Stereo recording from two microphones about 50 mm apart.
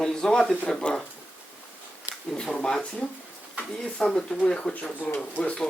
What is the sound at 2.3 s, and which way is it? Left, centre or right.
Speech, centre.